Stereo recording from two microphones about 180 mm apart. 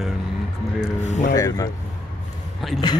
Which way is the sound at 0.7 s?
40° left (ahead or behind).